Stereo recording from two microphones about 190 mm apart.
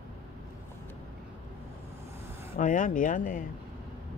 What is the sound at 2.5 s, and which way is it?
Speech, 40° left (ahead or behind).